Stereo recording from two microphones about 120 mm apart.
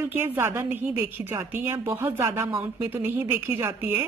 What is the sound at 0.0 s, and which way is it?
A woman's voice, 15° right (ahead or behind).